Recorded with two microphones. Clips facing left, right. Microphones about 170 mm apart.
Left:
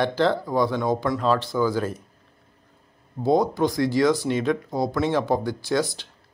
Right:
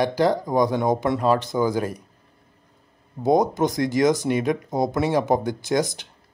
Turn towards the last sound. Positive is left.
turn(degrees=-20)  # may be behind; listen again after turning